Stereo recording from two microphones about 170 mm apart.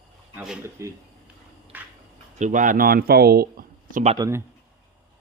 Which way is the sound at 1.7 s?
10° right (ahead or behind).